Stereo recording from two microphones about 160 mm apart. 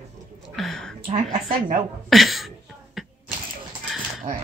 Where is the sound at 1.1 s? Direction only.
45° right (ahead or behind).